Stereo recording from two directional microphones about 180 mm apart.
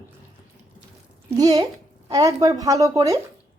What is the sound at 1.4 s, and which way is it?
Speech, 20° right (ahead or behind).